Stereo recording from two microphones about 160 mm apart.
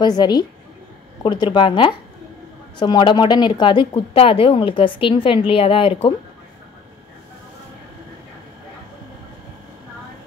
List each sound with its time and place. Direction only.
0.0 s speech: 25° left (ahead or behind)